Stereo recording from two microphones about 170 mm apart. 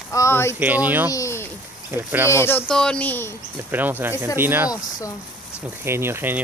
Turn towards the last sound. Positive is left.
turn(degrees=-15)  # may be behind; listen again after turning